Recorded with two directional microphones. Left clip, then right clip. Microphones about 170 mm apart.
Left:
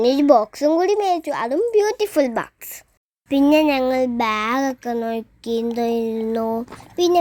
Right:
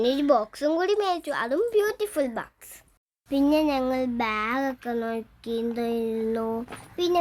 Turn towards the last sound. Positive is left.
turn(degrees=25)  # may be behind; listen again after turning